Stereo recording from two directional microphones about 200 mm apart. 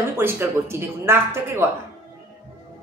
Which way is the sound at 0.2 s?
10° right (ahead or behind).